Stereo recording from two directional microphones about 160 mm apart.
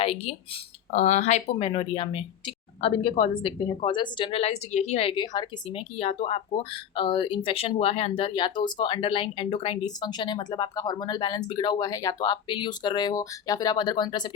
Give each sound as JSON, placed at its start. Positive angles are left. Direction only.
{"t": 0.0, "sound": "speech", "side_deg": 35}
{"t": 0.9, "sound": "speech", "side_deg": 50}
{"t": 6.0, "sound": "speech", "side_deg": 35}